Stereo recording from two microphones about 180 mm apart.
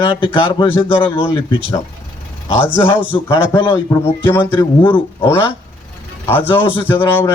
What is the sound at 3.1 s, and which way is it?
A man's voice, 25° left (ahead or behind).